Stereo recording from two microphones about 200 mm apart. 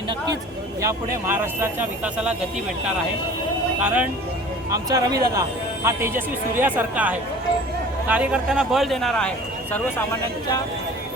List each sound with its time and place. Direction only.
0.8 s speech: 15° right (ahead or behind)
4.7 s speech: 20° right (ahead or behind); by 9.3 s 5° left (ahead or behind)